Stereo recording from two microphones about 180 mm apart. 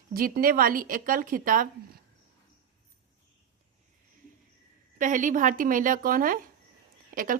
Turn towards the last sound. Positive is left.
turn(degrees=-50)  # may be behind; listen again after turning